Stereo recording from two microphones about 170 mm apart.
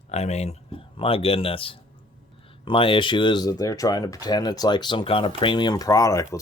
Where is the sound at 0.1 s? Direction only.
40° left (ahead or behind).